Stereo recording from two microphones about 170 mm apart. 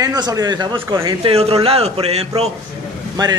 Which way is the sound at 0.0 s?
25° right (ahead or behind).